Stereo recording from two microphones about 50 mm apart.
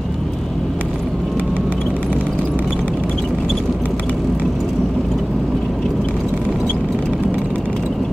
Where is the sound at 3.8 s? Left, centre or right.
Left.